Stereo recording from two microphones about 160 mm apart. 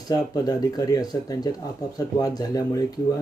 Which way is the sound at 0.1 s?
25° left (ahead or behind).